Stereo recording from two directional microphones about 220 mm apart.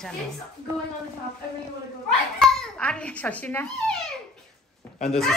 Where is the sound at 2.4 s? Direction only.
Centre (ahead or behind).